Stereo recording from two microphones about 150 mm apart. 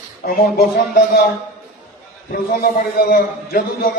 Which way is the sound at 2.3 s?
80° left.